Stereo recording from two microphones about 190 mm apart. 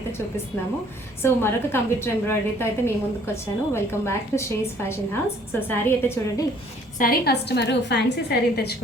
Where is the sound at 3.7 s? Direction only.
15° left (ahead or behind).